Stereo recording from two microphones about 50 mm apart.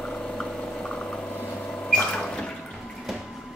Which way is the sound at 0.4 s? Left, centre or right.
Centre.